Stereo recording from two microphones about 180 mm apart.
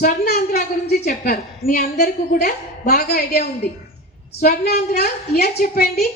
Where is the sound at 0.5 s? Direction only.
60° left (ahead or behind).